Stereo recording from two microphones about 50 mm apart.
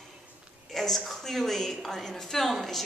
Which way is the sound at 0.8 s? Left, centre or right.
Centre.